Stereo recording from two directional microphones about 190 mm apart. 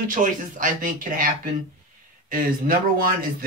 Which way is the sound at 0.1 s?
45° right (ahead or behind).